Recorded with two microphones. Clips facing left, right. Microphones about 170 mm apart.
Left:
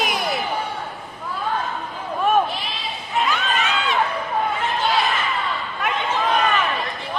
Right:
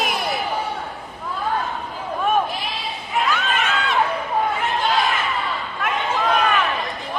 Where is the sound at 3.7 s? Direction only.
Centre (ahead or behind).